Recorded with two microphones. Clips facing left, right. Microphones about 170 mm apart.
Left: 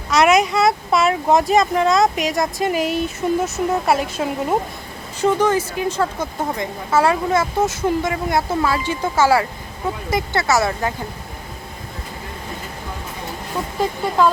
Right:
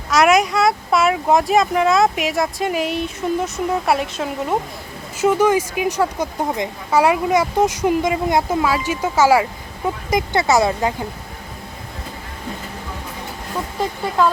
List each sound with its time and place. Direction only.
0.1 s speech: centre (ahead or behind)
5.2 s speech: 10° right (ahead or behind)